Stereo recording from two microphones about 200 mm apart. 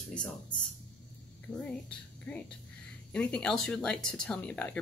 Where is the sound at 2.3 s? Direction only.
5° left (ahead or behind).